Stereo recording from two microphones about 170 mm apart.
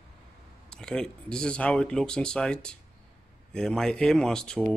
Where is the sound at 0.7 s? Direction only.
5° left (ahead or behind).